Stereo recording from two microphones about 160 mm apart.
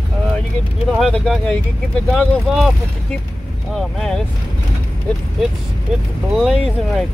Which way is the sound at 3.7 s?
Centre (ahead or behind).